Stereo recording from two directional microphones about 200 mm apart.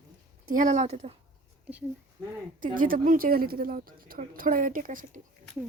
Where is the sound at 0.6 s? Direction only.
40° right (ahead or behind).